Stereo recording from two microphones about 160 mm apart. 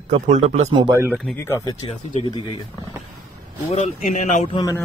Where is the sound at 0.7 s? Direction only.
25° right (ahead or behind).